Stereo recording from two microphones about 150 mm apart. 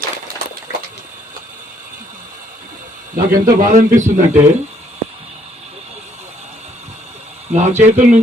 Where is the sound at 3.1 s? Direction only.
65° right (ahead or behind).